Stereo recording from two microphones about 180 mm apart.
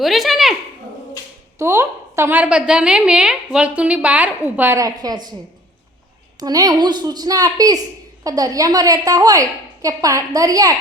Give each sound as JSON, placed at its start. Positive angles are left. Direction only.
{"t": 0.0, "sound": "speech", "side_deg": 0}
{"t": 1.5, "sound": "a woman's voice", "side_deg": -15}
{"t": 6.4, "sound": "a woman's voice", "side_deg": -20}